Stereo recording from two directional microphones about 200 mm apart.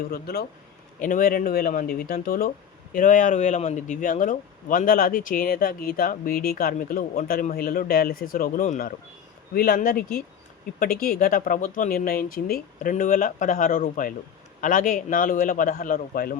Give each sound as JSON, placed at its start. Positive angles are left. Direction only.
{"t": 0.0, "sound": "a man's voice", "side_deg": 50}